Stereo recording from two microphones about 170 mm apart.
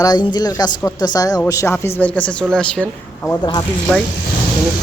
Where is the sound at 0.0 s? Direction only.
25° left (ahead or behind); by 2.8 s 5° left (ahead or behind).